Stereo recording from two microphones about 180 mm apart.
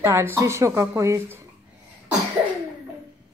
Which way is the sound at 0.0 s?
15° right (ahead or behind).